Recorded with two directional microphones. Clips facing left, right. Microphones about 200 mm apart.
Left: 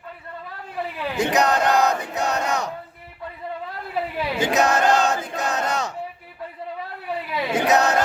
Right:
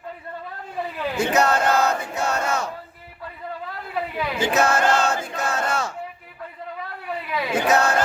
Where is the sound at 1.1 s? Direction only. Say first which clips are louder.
Even; 15° left (ahead or behind).